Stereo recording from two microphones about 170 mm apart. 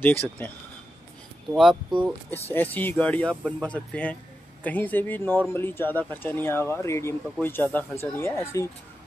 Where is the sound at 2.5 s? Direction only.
10° left (ahead or behind).